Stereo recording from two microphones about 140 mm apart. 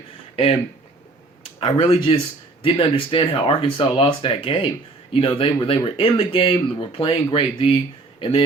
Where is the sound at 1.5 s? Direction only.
40° left (ahead or behind).